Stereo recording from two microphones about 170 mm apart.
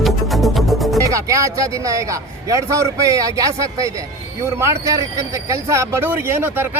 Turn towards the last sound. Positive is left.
turn(degrees=-15)  # may be behind; listen again after turning